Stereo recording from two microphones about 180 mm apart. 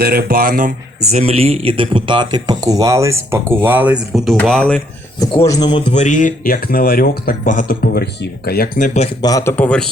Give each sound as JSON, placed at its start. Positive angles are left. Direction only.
{"t": 0.0, "sound": "speech", "side_deg": -55}
{"t": 1.1, "sound": "speech", "side_deg": -35}
{"t": 5.2, "sound": "speech", "side_deg": 20}
{"t": 5.9, "sound": "speech", "side_deg": 40}
{"t": 9.2, "sound": "speech", "side_deg": 15}